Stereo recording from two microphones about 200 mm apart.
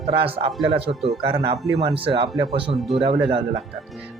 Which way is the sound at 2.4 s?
25° right (ahead or behind).